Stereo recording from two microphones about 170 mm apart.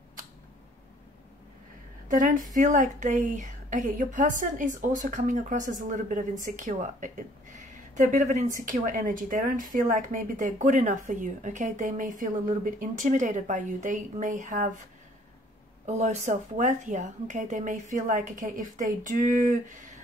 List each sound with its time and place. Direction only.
2.0 s a woman's voice: 50° right (ahead or behind)
15.8 s a woman's voice: 40° right (ahead or behind)